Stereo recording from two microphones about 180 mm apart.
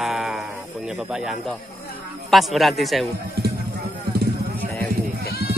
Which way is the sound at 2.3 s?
Centre (ahead or behind).